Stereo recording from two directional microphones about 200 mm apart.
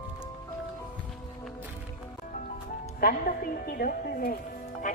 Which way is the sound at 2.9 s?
45° left (ahead or behind).